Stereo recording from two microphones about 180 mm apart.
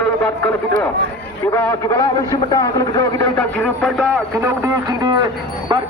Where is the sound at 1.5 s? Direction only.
15° left (ahead or behind).